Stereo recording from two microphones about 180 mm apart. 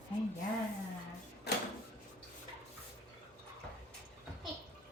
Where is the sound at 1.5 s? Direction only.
65° left (ahead or behind).